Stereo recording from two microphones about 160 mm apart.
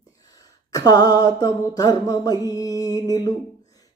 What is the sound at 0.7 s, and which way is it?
Music, 25° left (ahead or behind).